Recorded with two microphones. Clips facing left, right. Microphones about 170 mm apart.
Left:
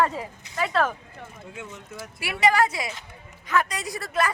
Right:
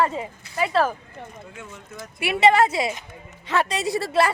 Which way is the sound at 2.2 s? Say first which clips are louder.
Right 4 dB; 25° right (ahead or behind).